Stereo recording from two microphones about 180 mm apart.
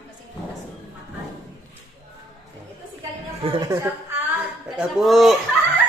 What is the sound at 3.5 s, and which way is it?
Speech, 15° right (ahead or behind).